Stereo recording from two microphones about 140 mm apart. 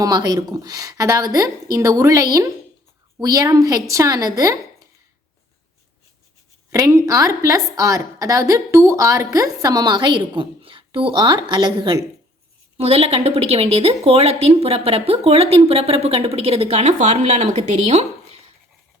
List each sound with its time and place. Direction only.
0.0 s a woman's voice: 30° right (ahead or behind)
6.7 s a woman's voice: 25° right (ahead or behind)
12.7 s a woman's voice: 45° right (ahead or behind)